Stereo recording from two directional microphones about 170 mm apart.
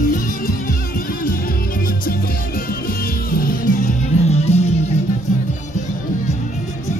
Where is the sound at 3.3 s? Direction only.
60° left (ahead or behind).